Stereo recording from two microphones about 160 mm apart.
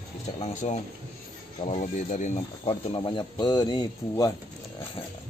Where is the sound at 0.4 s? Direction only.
45° left (ahead or behind); by 4.3 s 25° left (ahead or behind).